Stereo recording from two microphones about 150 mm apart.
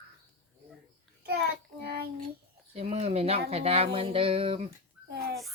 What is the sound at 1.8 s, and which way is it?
Child singing, 90° right.